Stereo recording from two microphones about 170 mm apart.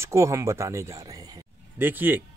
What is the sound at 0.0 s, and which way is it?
A man's voice, 15° right (ahead or behind).